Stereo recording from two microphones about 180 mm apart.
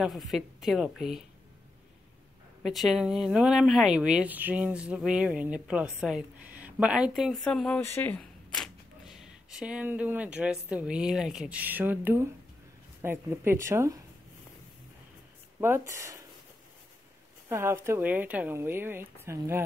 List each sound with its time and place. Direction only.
0.0 s speech: centre (ahead or behind)
2.6 s speech: centre (ahead or behind)
15.6 s speech: 15° right (ahead or behind)
17.5 s speech: 15° right (ahead or behind)